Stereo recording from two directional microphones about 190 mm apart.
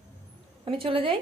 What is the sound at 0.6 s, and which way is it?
Speech, 30° right (ahead or behind).